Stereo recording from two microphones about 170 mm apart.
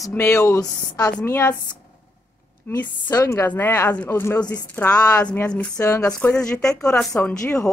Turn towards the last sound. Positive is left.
turn(degrees=20)  # may be behind; listen again after turning